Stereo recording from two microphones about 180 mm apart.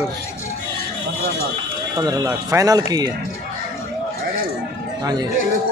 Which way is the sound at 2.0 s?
20° right (ahead or behind).